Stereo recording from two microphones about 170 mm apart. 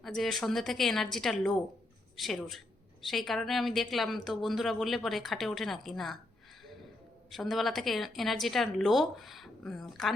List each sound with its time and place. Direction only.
0.0 s speech: centre (ahead or behind)
7.3 s speech: centre (ahead or behind)